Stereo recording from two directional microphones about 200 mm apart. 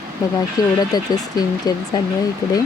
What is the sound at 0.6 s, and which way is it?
Speech, 20° left (ahead or behind).